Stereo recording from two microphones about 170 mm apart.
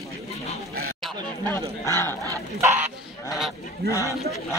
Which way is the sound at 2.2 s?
15° right (ahead or behind).